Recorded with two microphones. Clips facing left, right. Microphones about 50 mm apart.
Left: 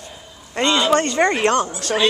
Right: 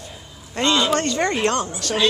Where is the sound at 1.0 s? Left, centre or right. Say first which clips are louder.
Left 4 dB; left.